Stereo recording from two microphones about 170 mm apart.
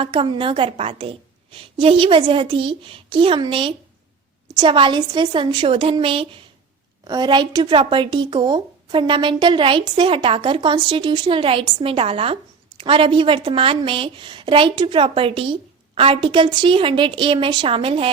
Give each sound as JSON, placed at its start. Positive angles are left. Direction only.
{"t": 0.0, "sound": "a woman's voice", "side_deg": -30}